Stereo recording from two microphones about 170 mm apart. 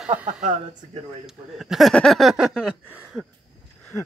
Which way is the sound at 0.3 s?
45° right (ahead or behind).